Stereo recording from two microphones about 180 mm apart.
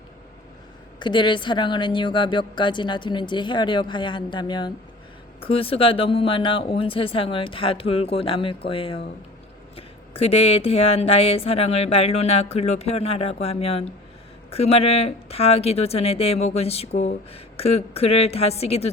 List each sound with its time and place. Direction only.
0.9 s speech: 25° left (ahead or behind)